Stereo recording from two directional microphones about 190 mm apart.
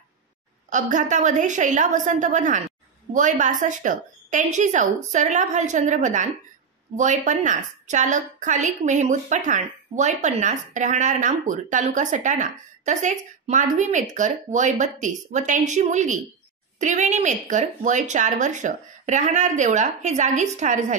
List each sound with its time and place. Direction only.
0.7 s a woman's voice: 40° right (ahead or behind)